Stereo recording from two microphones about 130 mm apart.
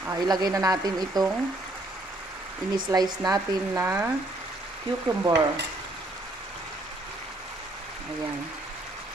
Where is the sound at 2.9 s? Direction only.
30° right (ahead or behind).